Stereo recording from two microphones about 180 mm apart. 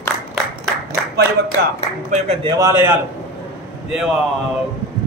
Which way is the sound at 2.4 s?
20° right (ahead or behind).